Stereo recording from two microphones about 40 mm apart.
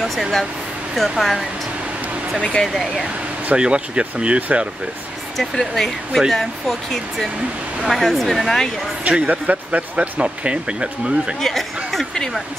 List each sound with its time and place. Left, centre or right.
0.0 s speech: centre
2.6 s speech: centre
3.5 s speech: right
5.4 s speech: centre
7.9 s speech: centre
9.0 s speech: right
9.3 s speech: right
11.4 s speech: centre